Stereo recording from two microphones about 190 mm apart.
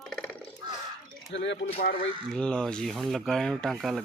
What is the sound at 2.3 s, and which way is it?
Speech, 5° left (ahead or behind).